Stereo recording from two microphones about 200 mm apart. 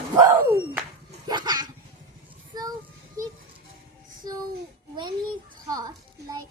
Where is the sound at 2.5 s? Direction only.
20° right (ahead or behind).